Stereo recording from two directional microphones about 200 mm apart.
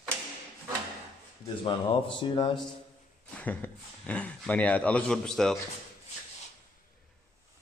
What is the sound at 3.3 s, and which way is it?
Speech, 10° left (ahead or behind).